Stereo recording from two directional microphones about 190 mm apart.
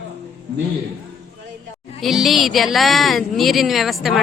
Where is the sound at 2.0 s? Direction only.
Centre (ahead or behind).